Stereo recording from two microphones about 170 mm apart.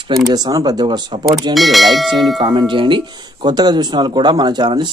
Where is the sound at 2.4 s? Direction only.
25° right (ahead or behind).